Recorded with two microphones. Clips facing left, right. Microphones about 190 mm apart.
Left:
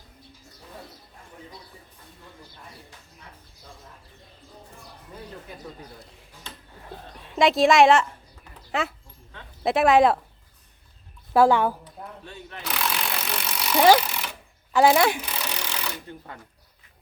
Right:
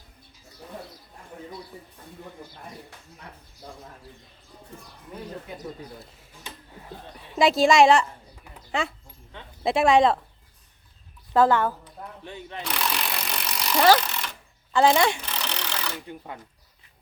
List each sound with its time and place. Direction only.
5.5 s a sound: 25° right (ahead or behind)
7.3 s a woman's voice: centre (ahead or behind)
11.3 s a woman's voice: 15° left (ahead or behind)
12.2 s a sound: 20° right (ahead or behind)
12.6 s jackhammer: centre (ahead or behind)
16.0 s speech: 15° right (ahead or behind)